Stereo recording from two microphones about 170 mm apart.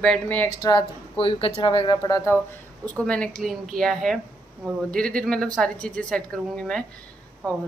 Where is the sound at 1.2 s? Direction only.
30° left (ahead or behind).